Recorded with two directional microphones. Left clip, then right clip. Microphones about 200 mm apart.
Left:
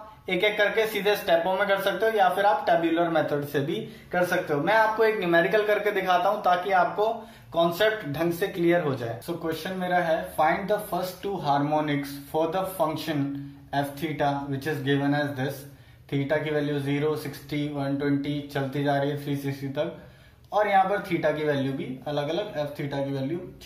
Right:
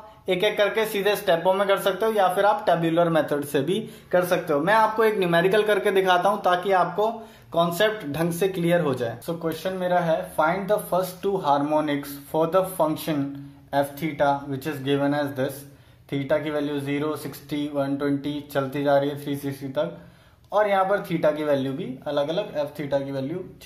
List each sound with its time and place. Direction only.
0.3 s speech: 55° right (ahead or behind)